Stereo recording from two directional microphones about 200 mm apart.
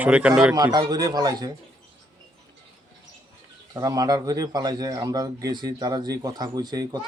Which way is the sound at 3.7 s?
15° right (ahead or behind).